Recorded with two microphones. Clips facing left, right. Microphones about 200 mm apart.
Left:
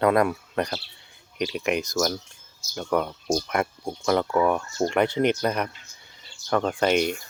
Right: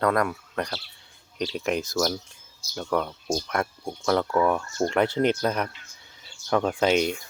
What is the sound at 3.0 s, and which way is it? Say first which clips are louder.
Speech: left 3 dB; 15° left (ahead or behind).